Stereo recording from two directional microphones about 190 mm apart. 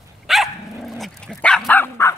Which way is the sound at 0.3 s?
Centre (ahead or behind).